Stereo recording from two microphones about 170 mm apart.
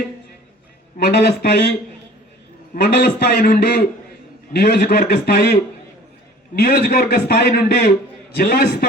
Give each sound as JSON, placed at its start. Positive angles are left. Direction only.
{"t": 0.9, "sound": "a man's voice", "side_deg": 65}
{"t": 2.7, "sound": "a man's voice", "side_deg": 65}
{"t": 6.6, "sound": "a man's voice", "side_deg": 65}